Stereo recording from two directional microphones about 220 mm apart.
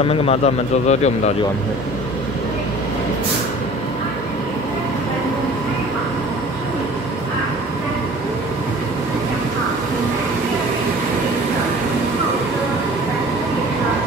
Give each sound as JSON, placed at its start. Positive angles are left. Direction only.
{"t": 0.0, "sound": "speech", "side_deg": 25}